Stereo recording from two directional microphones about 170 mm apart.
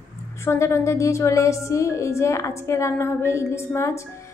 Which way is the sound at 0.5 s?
15° left (ahead or behind).